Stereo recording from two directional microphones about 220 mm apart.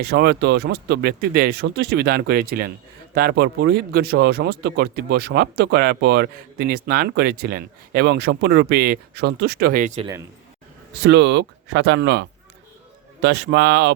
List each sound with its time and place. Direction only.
0.0 s speech: 45° right (ahead or behind)
11.0 s speech: 55° right (ahead or behind)
13.2 s speech: 55° right (ahead or behind)